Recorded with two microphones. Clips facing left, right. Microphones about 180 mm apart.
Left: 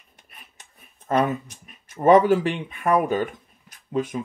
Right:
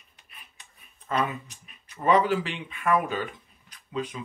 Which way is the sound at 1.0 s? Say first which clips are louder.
Left 6 dB; 45° left (ahead or behind).